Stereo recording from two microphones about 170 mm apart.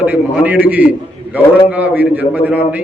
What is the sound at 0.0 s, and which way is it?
A man's voice, 10° right (ahead or behind).